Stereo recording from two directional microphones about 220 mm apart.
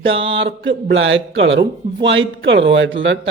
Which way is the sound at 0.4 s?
55° right (ahead or behind).